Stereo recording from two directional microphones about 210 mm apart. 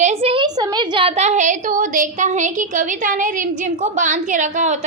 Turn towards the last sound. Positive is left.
turn(degrees=-35)  # may be behind; listen again after turning